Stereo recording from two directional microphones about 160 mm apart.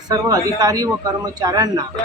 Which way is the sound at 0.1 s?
20° right (ahead or behind).